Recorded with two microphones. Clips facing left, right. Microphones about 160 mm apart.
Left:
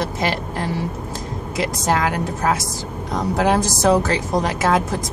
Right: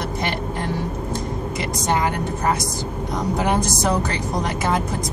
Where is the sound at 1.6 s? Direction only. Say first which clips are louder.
Left 3 dB; 90° left.